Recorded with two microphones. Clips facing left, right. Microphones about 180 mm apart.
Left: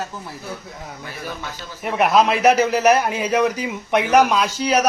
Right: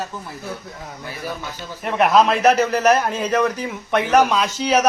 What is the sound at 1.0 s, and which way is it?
A man's voice, centre (ahead or behind).